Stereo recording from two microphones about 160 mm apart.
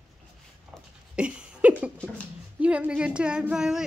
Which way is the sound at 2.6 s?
5° right (ahead or behind).